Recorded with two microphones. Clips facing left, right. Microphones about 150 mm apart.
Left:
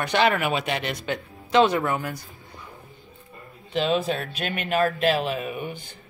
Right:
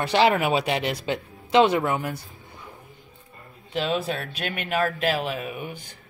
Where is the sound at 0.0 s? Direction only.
25° right (ahead or behind).